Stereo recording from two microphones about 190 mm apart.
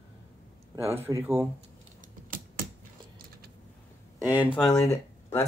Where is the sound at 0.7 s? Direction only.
10° right (ahead or behind).